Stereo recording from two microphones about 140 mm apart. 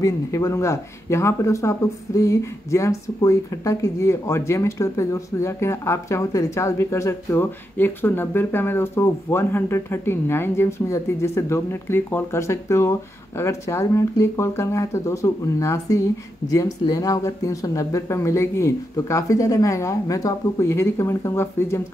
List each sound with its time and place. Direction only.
0.0 s speech: 25° left (ahead or behind)